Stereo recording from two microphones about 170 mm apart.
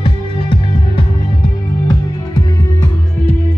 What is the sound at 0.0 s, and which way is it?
Music, 30° left (ahead or behind).